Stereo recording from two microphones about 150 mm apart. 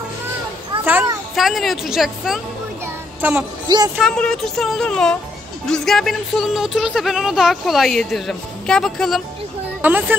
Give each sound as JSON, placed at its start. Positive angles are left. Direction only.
{"t": 1.3, "sound": "a woman's voice", "side_deg": 0}
{"t": 3.2, "sound": "music", "side_deg": -10}
{"t": 3.6, "sound": "speech", "side_deg": -30}
{"t": 4.0, "sound": "a woman's voice", "side_deg": 5}
{"t": 9.8, "sound": "speech", "side_deg": -10}